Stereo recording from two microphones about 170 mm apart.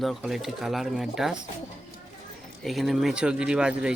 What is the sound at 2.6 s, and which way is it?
Speech, centre (ahead or behind).